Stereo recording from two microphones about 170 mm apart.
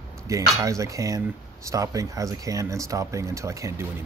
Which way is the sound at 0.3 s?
20° right (ahead or behind).